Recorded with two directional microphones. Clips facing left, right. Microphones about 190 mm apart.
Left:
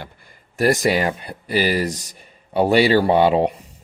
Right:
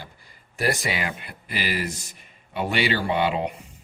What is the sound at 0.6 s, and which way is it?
Speech, 40° left (ahead or behind).